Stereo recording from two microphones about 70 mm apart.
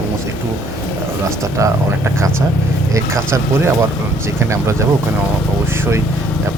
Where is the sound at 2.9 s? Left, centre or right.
Right.